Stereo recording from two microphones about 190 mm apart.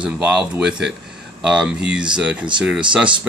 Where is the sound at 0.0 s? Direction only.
5° right (ahead or behind).